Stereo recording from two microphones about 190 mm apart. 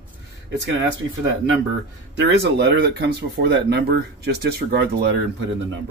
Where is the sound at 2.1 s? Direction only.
65° right (ahead or behind).